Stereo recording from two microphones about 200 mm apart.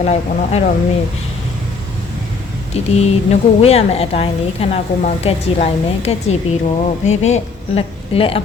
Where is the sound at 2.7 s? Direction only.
30° left (ahead or behind).